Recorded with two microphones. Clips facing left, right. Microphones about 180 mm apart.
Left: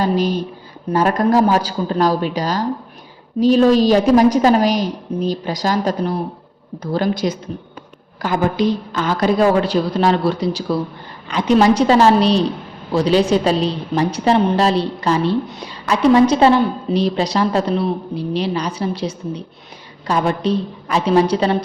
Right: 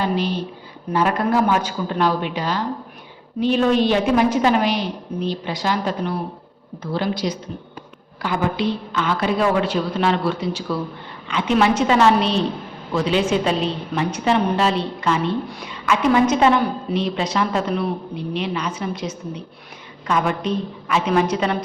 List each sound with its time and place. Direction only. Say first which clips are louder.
0.0 s a woman's voice: left 4 dB; 40° left (ahead or behind)
15.4 s a woman's voice: left 2 dB; 20° left (ahead or behind)
15.7 s a woman's voice: left 4 dB; 35° left (ahead or behind)